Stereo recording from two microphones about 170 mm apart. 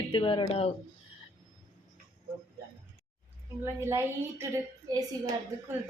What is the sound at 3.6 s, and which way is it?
A woman's voice, 15° right (ahead or behind).